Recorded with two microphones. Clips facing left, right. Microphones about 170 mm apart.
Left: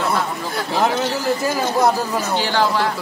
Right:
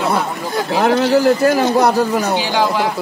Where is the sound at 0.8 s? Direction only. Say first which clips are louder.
Right 8 dB; 60° right (ahead or behind).